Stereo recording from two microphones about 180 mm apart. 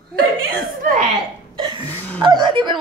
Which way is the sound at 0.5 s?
55° right (ahead or behind).